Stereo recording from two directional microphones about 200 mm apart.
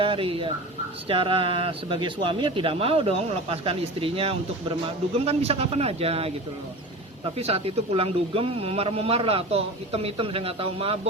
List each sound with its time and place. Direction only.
0.0 s speech: 25° right (ahead or behind)
7.3 s speech: 30° right (ahead or behind)